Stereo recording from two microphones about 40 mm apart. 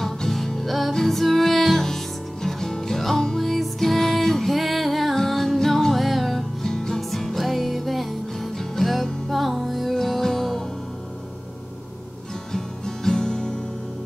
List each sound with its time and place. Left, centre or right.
0.0 s music: centre
6.6 s music: centre
12.5 s music: centre